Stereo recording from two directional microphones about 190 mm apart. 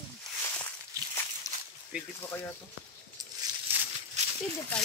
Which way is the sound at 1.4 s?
20° left (ahead or behind).